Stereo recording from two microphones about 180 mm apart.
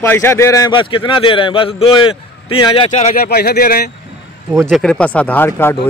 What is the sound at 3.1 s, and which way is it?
Speech, 55° left (ahead or behind).